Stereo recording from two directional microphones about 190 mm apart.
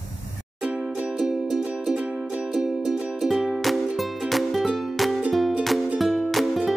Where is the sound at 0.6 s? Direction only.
5° right (ahead or behind).